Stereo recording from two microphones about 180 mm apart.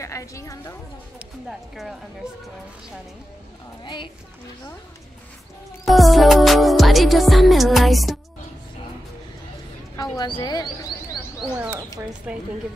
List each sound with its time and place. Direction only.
0.0 s a woman's voice: 15° left (ahead or behind)
1.5 s speech: centre (ahead or behind)
3.8 s speech: 25° left (ahead or behind)
5.9 s music: centre (ahead or behind)
10.1 s speech: 25° left (ahead or behind)
11.5 s speech: 10° right (ahead or behind)